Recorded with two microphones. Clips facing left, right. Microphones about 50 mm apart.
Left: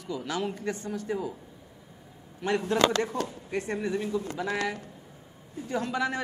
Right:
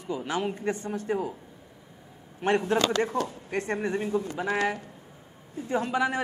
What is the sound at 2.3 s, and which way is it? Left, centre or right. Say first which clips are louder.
A man's voice: right 1 dB; right.